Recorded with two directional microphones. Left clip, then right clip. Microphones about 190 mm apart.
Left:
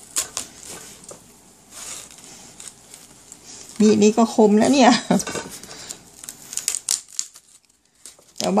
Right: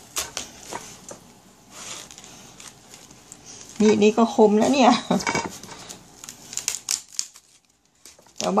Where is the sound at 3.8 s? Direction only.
25° left (ahead or behind).